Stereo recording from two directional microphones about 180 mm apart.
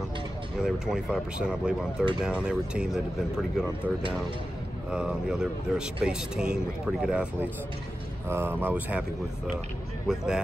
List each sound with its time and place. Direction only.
0.6 s speech: centre (ahead or behind)
4.9 s speech: 5° right (ahead or behind)
8.3 s speech: 10° right (ahead or behind)
10.0 s speech: 5° right (ahead or behind)